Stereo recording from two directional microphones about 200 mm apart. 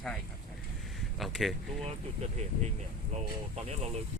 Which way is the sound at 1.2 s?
Centre (ahead or behind).